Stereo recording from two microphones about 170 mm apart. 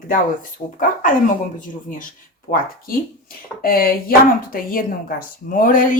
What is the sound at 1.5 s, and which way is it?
Speech, 50° left (ahead or behind).